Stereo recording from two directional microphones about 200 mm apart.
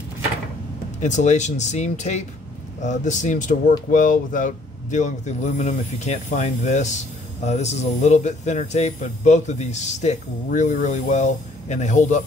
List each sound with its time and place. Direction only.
1.0 s speech: 35° left (ahead or behind)